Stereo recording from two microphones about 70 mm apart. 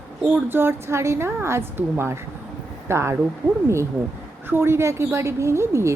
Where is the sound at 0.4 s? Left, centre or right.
Right.